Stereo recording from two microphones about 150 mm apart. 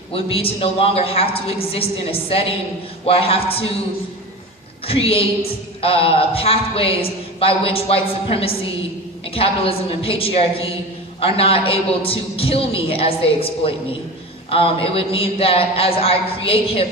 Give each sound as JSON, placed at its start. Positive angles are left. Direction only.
{"t": 0.1, "sound": "a man's voice", "side_deg": 40}
{"t": 4.9, "sound": "a man's voice", "side_deg": 40}